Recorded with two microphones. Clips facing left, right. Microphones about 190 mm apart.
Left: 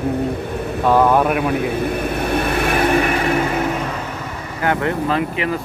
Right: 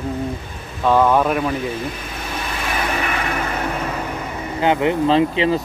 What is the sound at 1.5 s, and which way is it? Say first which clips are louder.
Vehicle: left 5 dB; 60° left (ahead or behind).